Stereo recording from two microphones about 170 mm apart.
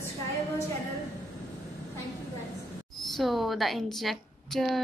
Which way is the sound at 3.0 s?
Centre (ahead or behind).